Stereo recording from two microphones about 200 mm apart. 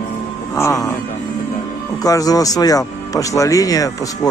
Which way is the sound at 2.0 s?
20° left (ahead or behind).